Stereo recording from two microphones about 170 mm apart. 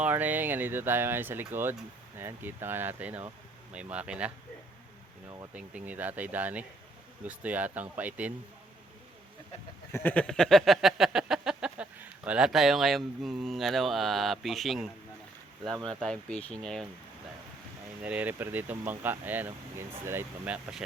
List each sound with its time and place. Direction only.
0.0 s speech: 10° right (ahead or behind)
5.5 s speech: 10° right (ahead or behind)
9.9 s a sound: 10° left (ahead or behind)
15.7 s speech: 25° right (ahead or behind)
16.0 s a sound: 5° left (ahead or behind)
18.0 s speech: 10° right (ahead or behind)